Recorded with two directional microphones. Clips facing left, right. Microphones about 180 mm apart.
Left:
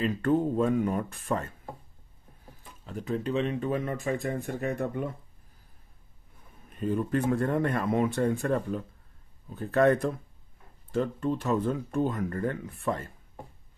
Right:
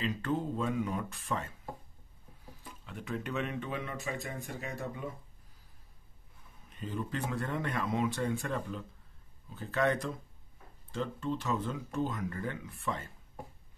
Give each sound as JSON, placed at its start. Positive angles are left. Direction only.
{"t": 0.0, "sound": "speech", "side_deg": 55}
{"t": 2.8, "sound": "speech", "side_deg": 40}
{"t": 6.7, "sound": "speech", "side_deg": 55}